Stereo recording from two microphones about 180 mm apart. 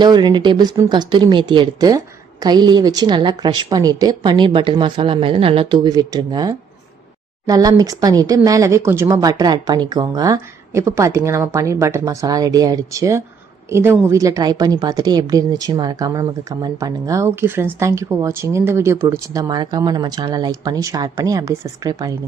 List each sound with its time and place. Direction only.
0.0 s a woman's voice: 25° right (ahead or behind)